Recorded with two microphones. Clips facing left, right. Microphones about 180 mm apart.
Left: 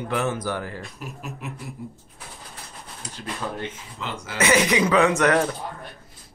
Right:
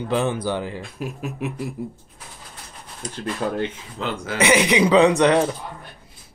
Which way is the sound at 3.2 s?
60° right (ahead or behind).